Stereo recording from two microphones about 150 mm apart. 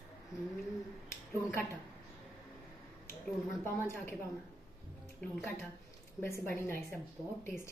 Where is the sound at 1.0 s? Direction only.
15° left (ahead or behind).